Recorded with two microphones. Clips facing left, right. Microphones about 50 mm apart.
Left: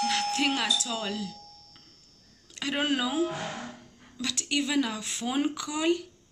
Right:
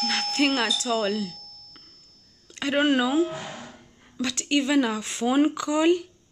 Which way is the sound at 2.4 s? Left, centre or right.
Centre.